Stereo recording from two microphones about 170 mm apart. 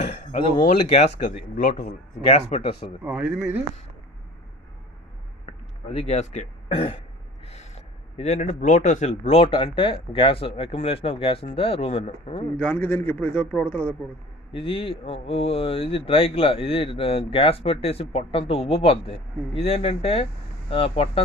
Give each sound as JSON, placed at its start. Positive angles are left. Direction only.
{"t": 0.0, "sound": "speech", "side_deg": 45}
{"t": 2.3, "sound": "speech", "side_deg": 35}
{"t": 3.0, "sound": "speech", "side_deg": -5}
{"t": 5.9, "sound": "speech", "side_deg": 40}
{"t": 12.5, "sound": "a man's voice", "side_deg": 10}
{"t": 14.5, "sound": "speech", "side_deg": 30}